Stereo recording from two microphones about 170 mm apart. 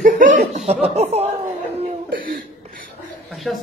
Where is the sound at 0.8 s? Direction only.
35° right (ahead or behind).